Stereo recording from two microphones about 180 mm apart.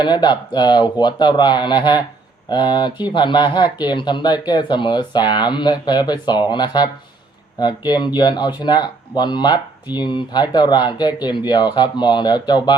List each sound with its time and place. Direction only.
0.0 s speech: 25° left (ahead or behind)